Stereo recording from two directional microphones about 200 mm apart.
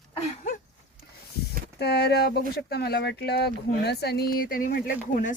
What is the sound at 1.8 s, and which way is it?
Speech, 55° left (ahead or behind).